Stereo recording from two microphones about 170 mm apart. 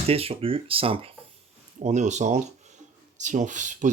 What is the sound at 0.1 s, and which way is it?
Speech, 35° right (ahead or behind).